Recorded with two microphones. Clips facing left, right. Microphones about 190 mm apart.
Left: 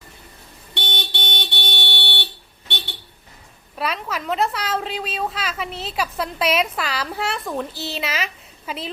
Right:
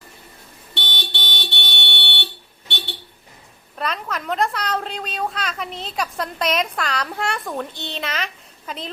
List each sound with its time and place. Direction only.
0.9 s vehicle: 50° left (ahead or behind)
3.8 s a woman's voice: 5° left (ahead or behind)